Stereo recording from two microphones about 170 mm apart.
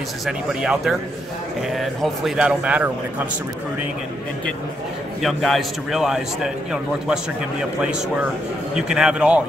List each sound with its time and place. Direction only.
0.2 s a man's voice: centre (ahead or behind)
5.2 s a man's voice: centre (ahead or behind)